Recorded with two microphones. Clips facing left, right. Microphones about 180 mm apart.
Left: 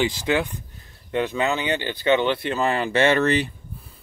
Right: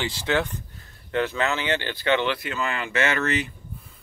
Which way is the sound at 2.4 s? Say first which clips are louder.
Left 6 dB; 35° left (ahead or behind).